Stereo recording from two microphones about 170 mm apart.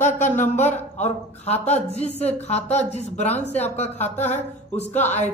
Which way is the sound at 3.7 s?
40° left (ahead or behind).